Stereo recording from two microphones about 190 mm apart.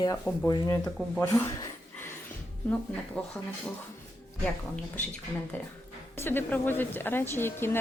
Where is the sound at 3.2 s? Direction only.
5° left (ahead or behind).